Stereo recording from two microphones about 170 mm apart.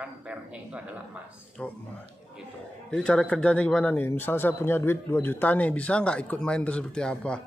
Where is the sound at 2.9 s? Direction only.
5° left (ahead or behind).